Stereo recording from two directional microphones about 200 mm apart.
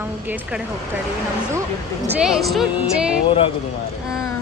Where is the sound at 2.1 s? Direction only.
5° right (ahead or behind).